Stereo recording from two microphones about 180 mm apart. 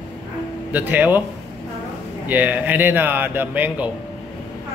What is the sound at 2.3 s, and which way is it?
A man's voice, 10° right (ahead or behind).